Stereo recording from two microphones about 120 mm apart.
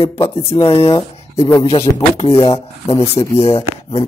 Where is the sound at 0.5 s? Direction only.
40° left (ahead or behind).